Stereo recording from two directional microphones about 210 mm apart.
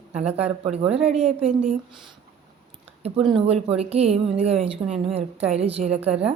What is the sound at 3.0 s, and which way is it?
A woman's voice, 25° right (ahead or behind).